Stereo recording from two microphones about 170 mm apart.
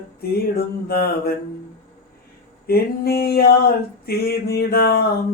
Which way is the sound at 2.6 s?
65° left (ahead or behind).